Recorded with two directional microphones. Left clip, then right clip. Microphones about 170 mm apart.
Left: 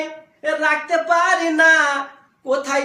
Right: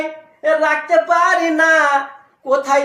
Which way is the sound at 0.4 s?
20° left (ahead or behind).